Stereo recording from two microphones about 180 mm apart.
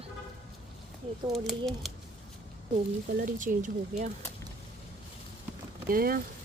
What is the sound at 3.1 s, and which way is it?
Speech, 45° right (ahead or behind).